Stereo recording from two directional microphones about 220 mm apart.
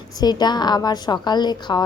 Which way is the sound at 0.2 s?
20° left (ahead or behind).